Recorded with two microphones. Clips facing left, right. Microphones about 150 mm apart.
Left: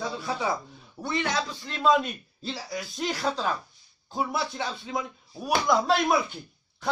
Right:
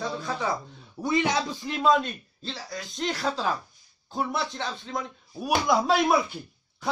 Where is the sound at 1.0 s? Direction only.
15° right (ahead or behind).